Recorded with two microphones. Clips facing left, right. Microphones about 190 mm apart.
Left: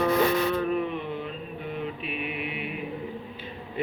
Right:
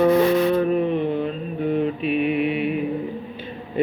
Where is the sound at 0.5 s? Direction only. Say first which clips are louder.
Right 7 dB; 30° right (ahead or behind).